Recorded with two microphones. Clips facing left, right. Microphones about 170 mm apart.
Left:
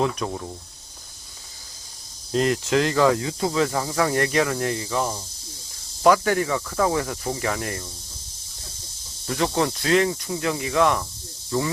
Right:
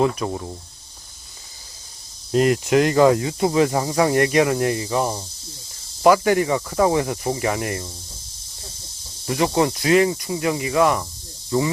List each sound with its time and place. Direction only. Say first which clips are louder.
0.0 s speech: right 4 dB; 5° right (ahead or behind)
2.3 s speech: right 4 dB; 10° right (ahead or behind); by 5.2 s 25° right (ahead or behind)
6.0 s speech: right 3 dB; 10° right (ahead or behind)
9.2 s speech: right 4 dB; 15° right (ahead or behind)